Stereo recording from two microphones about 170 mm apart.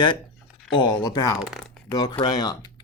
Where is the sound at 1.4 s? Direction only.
5° right (ahead or behind).